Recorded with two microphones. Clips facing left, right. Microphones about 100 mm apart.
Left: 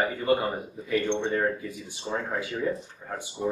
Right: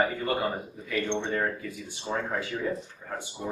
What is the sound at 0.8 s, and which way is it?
Speech, 20° left (ahead or behind).